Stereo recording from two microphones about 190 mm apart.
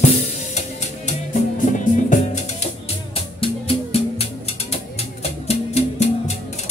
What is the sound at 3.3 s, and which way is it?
Music, 30° left (ahead or behind).